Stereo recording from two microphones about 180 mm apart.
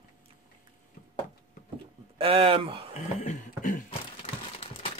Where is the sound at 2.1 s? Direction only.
30° right (ahead or behind).